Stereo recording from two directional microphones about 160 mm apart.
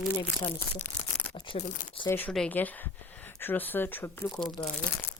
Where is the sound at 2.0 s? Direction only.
10° left (ahead or behind).